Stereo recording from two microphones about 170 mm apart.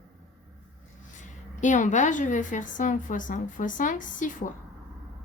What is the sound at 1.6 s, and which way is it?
A woman's voice, 45° left (ahead or behind).